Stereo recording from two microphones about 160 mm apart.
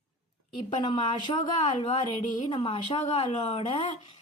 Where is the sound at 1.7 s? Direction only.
45° left (ahead or behind).